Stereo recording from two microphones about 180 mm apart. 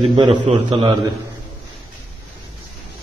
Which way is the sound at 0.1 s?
25° right (ahead or behind).